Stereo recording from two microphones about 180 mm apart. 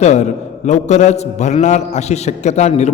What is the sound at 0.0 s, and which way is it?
A man's voice, 40° left (ahead or behind).